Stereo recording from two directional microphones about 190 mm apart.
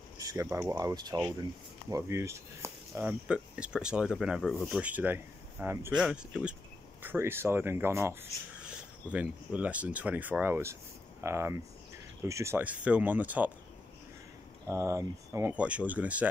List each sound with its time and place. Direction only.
0.2 s speech: 15° right (ahead or behind)
14.7 s speech: 15° right (ahead or behind)